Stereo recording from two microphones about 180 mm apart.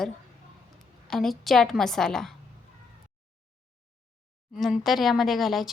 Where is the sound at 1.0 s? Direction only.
Centre (ahead or behind).